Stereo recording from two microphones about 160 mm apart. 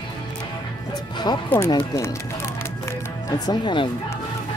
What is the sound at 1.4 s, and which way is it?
Speech, 15° left (ahead or behind).